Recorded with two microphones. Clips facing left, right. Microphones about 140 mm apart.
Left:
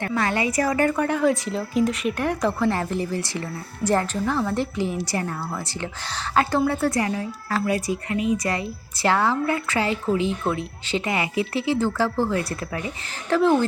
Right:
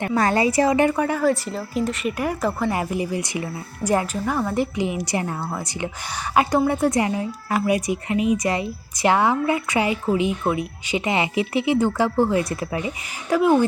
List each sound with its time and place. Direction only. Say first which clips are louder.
0.1 s a woman's voice: right 5 dB; 40° right (ahead or behind); by 0.9 s 20° right (ahead or behind)
0.9 s speech: right 1 dB; 5° right (ahead or behind)